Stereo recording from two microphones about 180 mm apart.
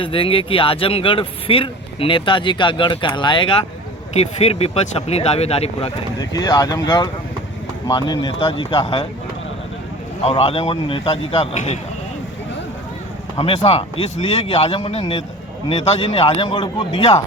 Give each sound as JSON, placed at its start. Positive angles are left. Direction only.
{"t": 0.0, "sound": "a man's voice", "side_deg": 30}
{"t": 6.1, "sound": "speech", "side_deg": 20}
{"t": 10.2, "sound": "a man's voice", "side_deg": 35}
{"t": 13.3, "sound": "a man's voice", "side_deg": 35}